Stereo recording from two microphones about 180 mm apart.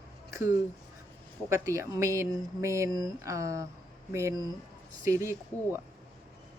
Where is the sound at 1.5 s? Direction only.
15° right (ahead or behind).